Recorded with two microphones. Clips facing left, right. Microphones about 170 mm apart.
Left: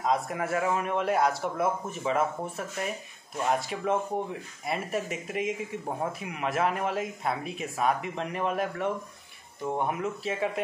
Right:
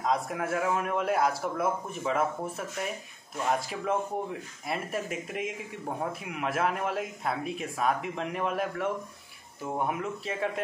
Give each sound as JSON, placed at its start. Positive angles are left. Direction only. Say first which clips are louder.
{"t": 0.0, "sound": "speech", "louder": "left 1 dB", "side_deg": 0}